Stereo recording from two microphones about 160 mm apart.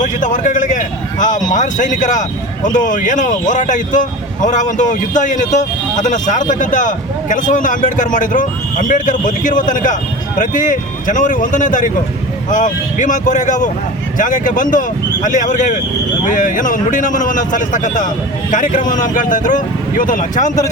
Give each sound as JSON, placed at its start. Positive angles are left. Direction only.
{"t": 0.0, "sound": "speech", "side_deg": 50}